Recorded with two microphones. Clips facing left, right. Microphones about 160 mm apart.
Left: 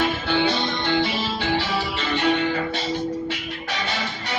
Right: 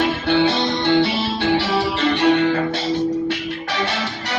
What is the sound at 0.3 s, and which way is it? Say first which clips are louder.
Music: right 5 dB; 70° right (ahead or behind).